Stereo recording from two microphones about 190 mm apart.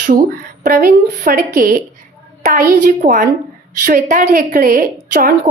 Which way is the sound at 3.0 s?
45° right (ahead or behind).